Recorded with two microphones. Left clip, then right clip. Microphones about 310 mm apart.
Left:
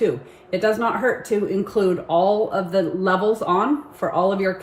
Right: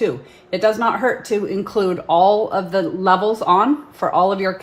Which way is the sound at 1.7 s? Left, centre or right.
Right.